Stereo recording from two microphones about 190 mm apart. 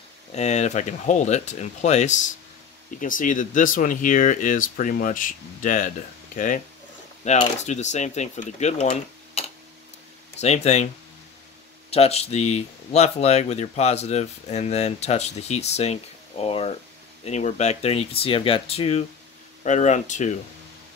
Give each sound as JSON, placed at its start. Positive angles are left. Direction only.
{"t": 0.3, "sound": "speech", "side_deg": 35}
{"t": 10.4, "sound": "speech", "side_deg": 35}
{"t": 11.9, "sound": "speech", "side_deg": 30}